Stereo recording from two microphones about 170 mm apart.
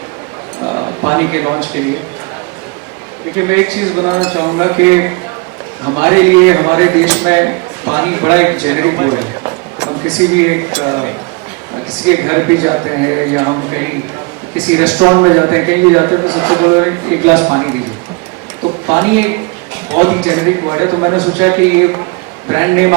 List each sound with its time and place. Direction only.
0.6 s a sound: 30° right (ahead or behind)
1.0 s speech: 15° right (ahead or behind)
3.3 s a man's voice: 15° right (ahead or behind)
15.0 s a man's voice: 20° right (ahead or behind)
18.9 s speech: 15° right (ahead or behind)
21.3 s speech: 10° right (ahead or behind)